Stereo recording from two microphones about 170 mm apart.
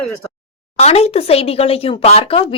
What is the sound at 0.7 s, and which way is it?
Speech, 40° left (ahead or behind).